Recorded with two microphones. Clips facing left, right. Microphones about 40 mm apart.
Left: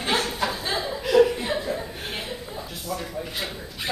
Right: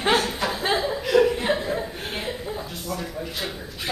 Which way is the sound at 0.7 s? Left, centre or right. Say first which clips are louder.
Right 3 dB; centre.